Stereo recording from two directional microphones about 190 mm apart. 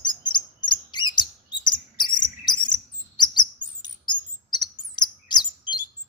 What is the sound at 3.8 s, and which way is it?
Bird, 20° left (ahead or behind).